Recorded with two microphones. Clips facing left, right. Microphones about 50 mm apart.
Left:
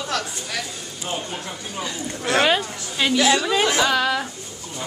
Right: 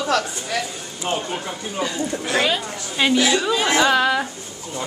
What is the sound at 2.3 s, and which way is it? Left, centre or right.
Speech, left.